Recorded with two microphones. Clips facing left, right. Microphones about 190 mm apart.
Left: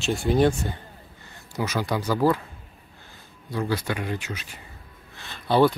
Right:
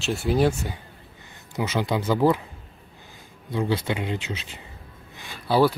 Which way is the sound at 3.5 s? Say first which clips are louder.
Right 2 dB; 25° right (ahead or behind).